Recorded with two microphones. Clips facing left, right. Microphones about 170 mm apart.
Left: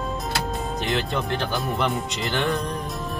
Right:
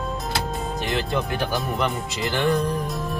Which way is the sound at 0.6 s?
Centre (ahead or behind).